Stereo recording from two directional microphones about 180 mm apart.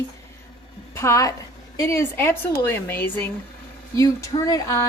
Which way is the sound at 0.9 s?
15° left (ahead or behind).